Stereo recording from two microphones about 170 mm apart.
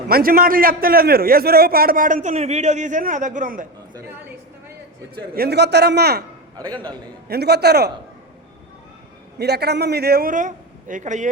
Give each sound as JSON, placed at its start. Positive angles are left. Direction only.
{"t": 0.1, "sound": "a man's voice", "side_deg": -60}
{"t": 5.3, "sound": "a man's voice", "side_deg": -70}
{"t": 6.6, "sound": "a man's voice", "side_deg": -25}
{"t": 7.3, "sound": "a man's voice", "side_deg": -70}
{"t": 9.4, "sound": "a man's voice", "side_deg": -75}